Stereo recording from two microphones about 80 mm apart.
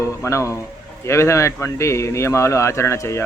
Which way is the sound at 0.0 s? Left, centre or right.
Left.